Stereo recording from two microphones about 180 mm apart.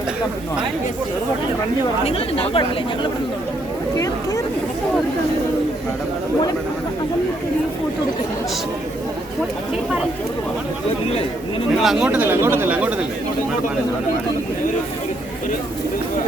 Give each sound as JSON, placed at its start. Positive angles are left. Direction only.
{"t": 2.0, "sound": "speech", "side_deg": 30}
{"t": 3.9, "sound": "speech", "side_deg": 20}
{"t": 11.8, "sound": "speech", "side_deg": 0}